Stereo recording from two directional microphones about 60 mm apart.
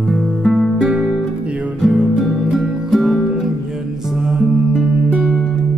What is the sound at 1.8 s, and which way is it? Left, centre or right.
Music, centre.